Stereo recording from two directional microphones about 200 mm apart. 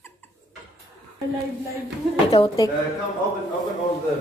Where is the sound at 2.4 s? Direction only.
25° left (ahead or behind).